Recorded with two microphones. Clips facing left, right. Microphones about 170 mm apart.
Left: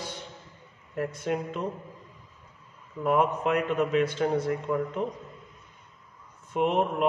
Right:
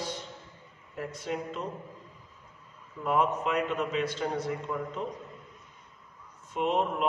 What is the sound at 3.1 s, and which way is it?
A man's voice, 55° left (ahead or behind).